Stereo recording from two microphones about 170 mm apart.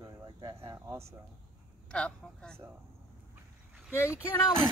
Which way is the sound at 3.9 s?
15° left (ahead or behind).